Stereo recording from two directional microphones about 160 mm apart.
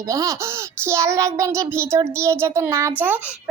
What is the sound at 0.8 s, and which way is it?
Child singing, 20° right (ahead or behind).